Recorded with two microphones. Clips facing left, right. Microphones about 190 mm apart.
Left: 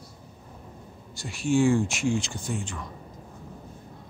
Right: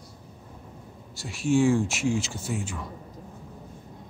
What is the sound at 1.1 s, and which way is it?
Speech, centre (ahead or behind).